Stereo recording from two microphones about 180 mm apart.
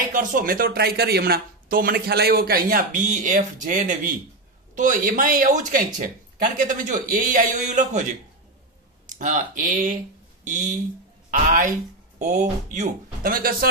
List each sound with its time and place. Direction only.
0.1 s speech: 50° right (ahead or behind)
9.0 s speech: 45° right (ahead or behind)